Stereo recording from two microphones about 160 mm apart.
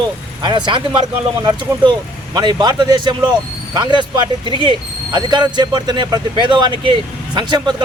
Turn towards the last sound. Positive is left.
turn(degrees=-30)  # may be behind; listen again after turning